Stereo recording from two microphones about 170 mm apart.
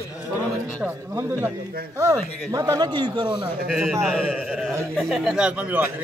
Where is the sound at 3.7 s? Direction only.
Centre (ahead or behind).